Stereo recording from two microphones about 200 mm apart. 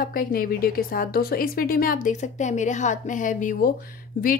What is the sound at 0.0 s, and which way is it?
A woman's voice, 45° left (ahead or behind).